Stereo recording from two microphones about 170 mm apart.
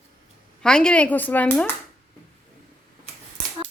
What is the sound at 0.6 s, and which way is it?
Speech, 5° left (ahead or behind).